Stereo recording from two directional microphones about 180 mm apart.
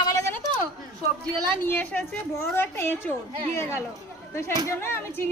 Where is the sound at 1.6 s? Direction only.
10° left (ahead or behind).